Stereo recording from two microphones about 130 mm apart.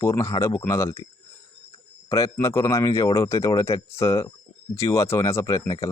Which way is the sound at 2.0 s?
25° left (ahead or behind).